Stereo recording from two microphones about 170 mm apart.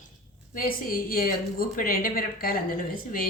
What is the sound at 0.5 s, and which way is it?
A woman's voice, 55° left (ahead or behind).